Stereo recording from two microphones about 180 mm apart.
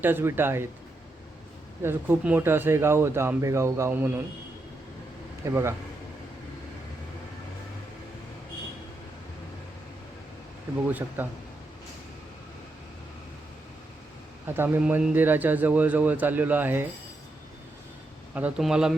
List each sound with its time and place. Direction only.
0.0 s speech: 10° right (ahead or behind)
1.8 s speech: 15° right (ahead or behind)
5.5 s speech: 15° right (ahead or behind)
11.2 s speech: 10° right (ahead or behind)
14.4 s speech: 10° right (ahead or behind)
18.3 s speech: 5° right (ahead or behind)